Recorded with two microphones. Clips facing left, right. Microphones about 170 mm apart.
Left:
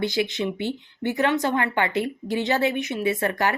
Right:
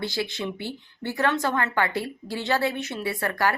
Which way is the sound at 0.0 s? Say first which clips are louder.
Left 5 dB; 20° left (ahead or behind).